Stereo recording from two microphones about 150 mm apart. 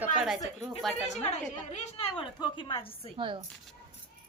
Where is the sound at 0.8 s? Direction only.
Centre (ahead or behind).